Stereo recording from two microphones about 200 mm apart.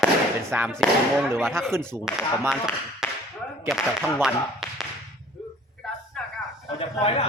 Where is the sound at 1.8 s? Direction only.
5° left (ahead or behind).